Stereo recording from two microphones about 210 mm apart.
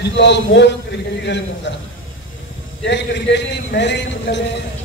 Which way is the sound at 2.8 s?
55° left (ahead or behind).